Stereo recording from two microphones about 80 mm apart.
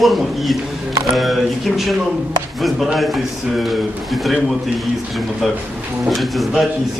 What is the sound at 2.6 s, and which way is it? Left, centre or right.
Speech, centre.